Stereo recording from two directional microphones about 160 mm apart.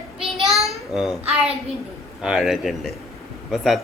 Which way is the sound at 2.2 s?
5° right (ahead or behind).